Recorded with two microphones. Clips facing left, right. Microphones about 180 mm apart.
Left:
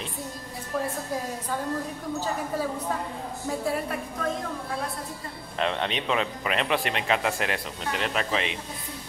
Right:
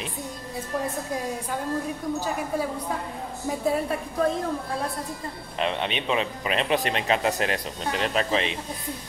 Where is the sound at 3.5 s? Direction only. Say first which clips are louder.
Right 1 dB; 20° right (ahead or behind).